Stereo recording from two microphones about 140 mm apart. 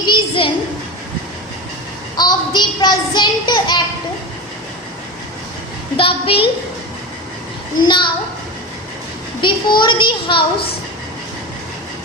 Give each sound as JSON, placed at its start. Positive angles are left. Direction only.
{"t": 0.1, "sound": "a sound", "side_deg": 40}
{"t": 2.1, "sound": "a child's voice", "side_deg": 30}
{"t": 6.0, "sound": "a child's voice", "side_deg": 40}
{"t": 7.8, "sound": "a child's voice", "side_deg": 35}
{"t": 9.4, "sound": "a child's voice", "side_deg": 35}